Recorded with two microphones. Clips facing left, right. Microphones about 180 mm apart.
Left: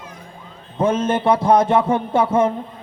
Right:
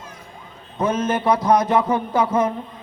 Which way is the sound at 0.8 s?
30° left (ahead or behind).